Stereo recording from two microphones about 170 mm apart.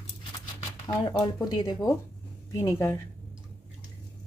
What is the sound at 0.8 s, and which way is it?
A woman's voice, 25° left (ahead or behind).